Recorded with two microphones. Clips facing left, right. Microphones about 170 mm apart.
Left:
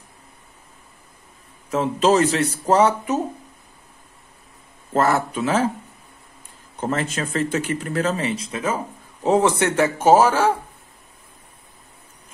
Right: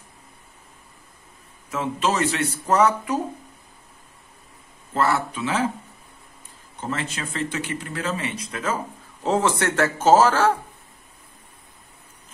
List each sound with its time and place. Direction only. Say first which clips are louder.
1.7 s speech: left 6 dB; 35° left (ahead or behind)
4.9 s speech: left 3 dB; 45° left (ahead or behind)
6.8 s speech: left 5 dB; 45° left (ahead or behind); by 10.5 s 15° left (ahead or behind)